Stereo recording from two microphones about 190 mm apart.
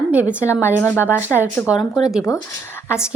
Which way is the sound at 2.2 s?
15° left (ahead or behind).